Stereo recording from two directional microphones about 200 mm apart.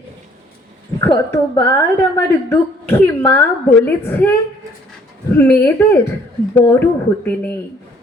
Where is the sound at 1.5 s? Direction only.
15° left (ahead or behind).